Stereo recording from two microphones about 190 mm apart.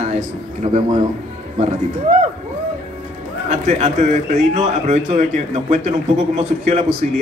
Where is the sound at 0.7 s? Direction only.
20° right (ahead or behind).